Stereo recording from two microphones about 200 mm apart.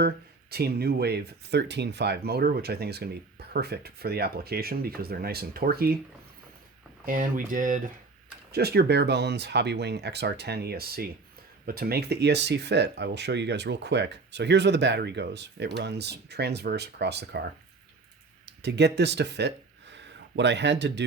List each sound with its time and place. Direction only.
0.5 s speech: 50° right (ahead or behind)
7.0 s speech: 45° right (ahead or behind)
8.5 s speech: 55° right (ahead or behind)